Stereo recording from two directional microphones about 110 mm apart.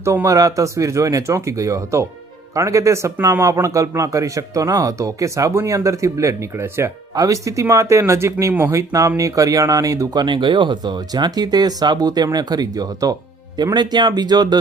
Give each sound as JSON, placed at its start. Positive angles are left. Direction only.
{"t": 0.0, "sound": "a man's voice", "side_deg": -25}